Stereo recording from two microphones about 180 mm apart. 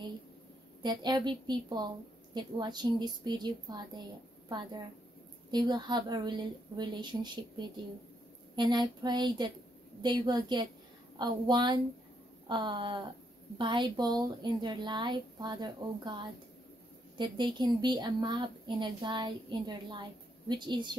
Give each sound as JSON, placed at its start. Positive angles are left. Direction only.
{"t": 0.8, "sound": "a woman's voice", "side_deg": -25}
{"t": 5.5, "sound": "a woman's voice", "side_deg": -25}